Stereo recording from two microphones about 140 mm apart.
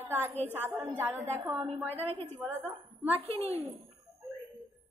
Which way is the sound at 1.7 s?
50° right (ahead or behind).